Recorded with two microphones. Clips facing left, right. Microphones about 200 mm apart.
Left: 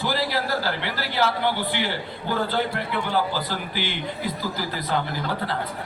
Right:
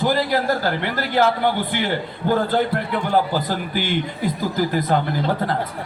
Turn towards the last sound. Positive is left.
turn(degrees=-50)  # may be behind; listen again after turning